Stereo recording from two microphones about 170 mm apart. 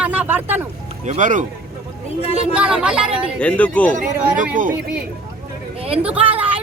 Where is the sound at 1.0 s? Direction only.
45° right (ahead or behind).